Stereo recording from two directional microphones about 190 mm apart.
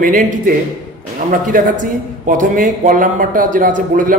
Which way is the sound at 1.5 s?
45° right (ahead or behind).